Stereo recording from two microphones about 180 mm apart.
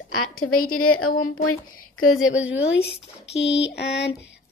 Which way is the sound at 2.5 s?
90° left.